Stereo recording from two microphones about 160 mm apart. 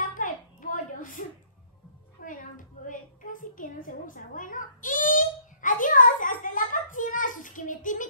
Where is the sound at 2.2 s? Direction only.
55° left (ahead or behind).